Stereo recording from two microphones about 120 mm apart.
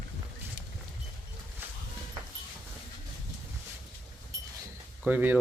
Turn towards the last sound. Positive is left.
turn(degrees=-15)  # may be behind; listen again after turning